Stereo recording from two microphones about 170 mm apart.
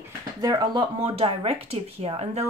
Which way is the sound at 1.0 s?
35° right (ahead or behind).